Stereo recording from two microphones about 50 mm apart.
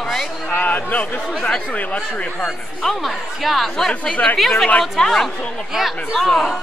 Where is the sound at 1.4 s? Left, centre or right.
Left.